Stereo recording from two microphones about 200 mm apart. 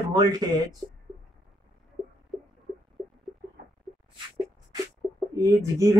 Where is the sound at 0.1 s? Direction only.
20° right (ahead or behind).